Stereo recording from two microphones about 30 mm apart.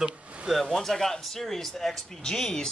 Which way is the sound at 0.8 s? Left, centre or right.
Centre.